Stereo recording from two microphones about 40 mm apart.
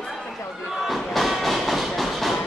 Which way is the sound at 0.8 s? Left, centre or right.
Centre.